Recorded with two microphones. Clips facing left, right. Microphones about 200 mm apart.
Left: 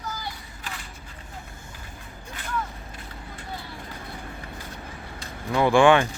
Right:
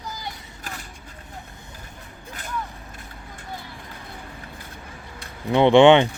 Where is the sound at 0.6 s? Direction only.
40° right (ahead or behind).